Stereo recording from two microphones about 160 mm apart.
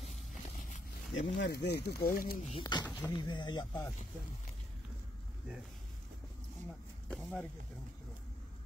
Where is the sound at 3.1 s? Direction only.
30° left (ahead or behind).